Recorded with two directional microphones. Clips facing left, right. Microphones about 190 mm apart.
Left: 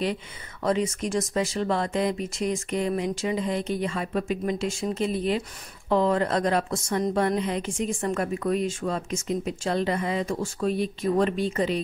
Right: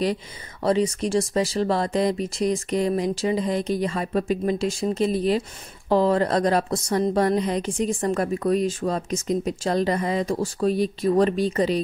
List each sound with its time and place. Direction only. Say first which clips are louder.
0.0 s a woman's voice: right 4 dB; 35° right (ahead or behind)